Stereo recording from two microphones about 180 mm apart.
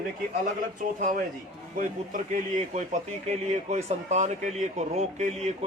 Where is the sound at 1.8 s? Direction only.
45° right (ahead or behind).